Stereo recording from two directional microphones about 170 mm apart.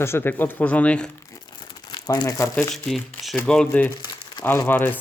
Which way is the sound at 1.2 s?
20° left (ahead or behind).